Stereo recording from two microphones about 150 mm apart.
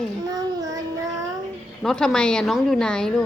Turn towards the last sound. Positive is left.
turn(degrees=5)  # may be behind; listen again after turning